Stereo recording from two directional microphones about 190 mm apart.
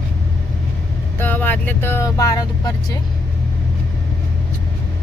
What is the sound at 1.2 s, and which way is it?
Speech, 10° left (ahead or behind).